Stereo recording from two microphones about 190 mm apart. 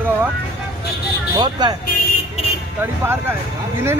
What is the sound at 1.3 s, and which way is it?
Speech, 25° right (ahead or behind).